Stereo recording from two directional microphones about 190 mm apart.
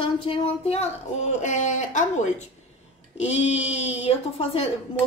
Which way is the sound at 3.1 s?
35° left (ahead or behind).